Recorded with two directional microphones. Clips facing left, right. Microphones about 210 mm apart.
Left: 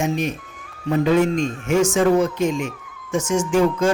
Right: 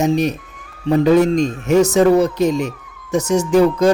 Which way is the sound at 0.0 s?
40° right (ahead or behind).